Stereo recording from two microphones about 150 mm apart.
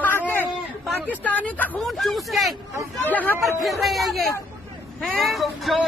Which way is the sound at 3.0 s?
10° left (ahead or behind).